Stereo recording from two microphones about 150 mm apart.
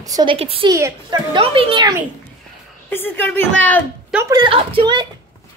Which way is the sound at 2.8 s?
15° left (ahead or behind).